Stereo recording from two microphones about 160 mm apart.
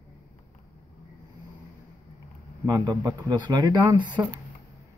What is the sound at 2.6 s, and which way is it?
A man's voice, 25° right (ahead or behind).